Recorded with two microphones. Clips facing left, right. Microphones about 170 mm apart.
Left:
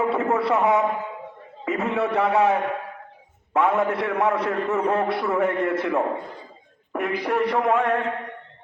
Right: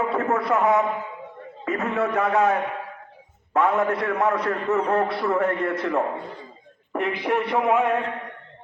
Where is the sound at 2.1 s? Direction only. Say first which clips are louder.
Left 1 dB; 15° left (ahead or behind).